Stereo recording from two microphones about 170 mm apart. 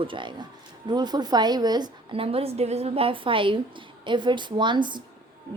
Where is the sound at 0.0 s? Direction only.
30° right (ahead or behind).